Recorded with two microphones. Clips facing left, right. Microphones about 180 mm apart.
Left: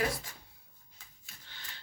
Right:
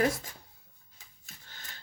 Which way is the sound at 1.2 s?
45° right (ahead or behind).